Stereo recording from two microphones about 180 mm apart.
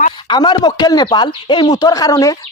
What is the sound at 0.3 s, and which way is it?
Speech, 25° left (ahead or behind).